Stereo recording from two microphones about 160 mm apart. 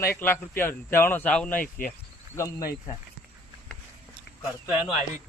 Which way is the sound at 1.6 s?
60° left (ahead or behind).